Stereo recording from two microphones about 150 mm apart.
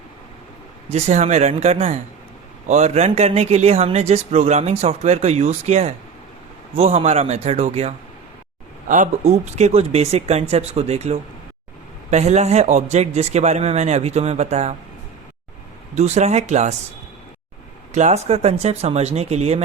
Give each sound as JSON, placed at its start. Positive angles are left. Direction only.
{"t": 0.9, "sound": "speech", "side_deg": -45}
{"t": 9.2, "sound": "speech", "side_deg": -45}
{"t": 16.0, "sound": "speech", "side_deg": -50}
{"t": 17.9, "sound": "speech", "side_deg": -50}